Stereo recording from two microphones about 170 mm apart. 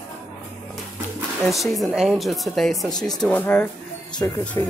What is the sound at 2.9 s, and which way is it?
Speech, 25° left (ahead or behind).